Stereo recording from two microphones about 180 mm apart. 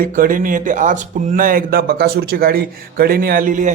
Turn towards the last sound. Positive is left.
turn(degrees=-45)  # may be behind; listen again after turning